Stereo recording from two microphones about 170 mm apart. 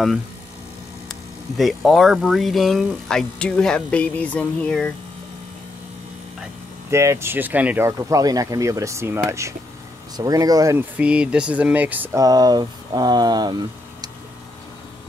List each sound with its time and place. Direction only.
1.6 s speech: centre (ahead or behind)
6.9 s speech: 15° right (ahead or behind)